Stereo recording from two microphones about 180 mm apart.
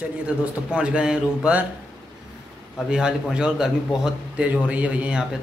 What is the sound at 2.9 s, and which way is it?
A man's voice, 5° right (ahead or behind).